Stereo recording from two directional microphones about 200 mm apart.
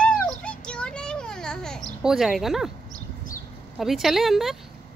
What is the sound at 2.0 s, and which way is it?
Speech, centre (ahead or behind).